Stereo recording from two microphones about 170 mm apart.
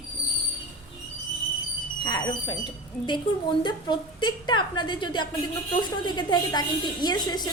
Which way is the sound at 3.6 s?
25° left (ahead or behind).